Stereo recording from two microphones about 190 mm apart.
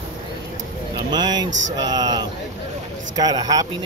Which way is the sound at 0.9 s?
20° right (ahead or behind).